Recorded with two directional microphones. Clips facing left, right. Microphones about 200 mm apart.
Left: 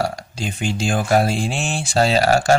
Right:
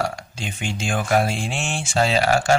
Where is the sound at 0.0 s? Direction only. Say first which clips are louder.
Left 3 dB; 35° left (ahead or behind).